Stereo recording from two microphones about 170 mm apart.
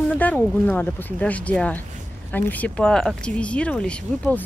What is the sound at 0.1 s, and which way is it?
Speech, 10° left (ahead or behind).